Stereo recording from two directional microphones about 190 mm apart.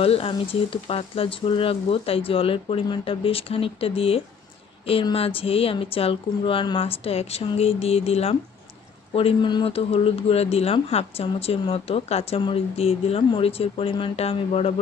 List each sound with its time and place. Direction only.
0.0 s speech: 30° left (ahead or behind)